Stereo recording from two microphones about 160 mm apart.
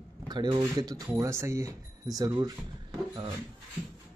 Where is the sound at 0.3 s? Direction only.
25° right (ahead or behind).